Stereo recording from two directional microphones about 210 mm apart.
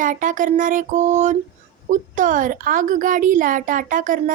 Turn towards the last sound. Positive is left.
turn(degrees=-40)  # may be behind; listen again after turning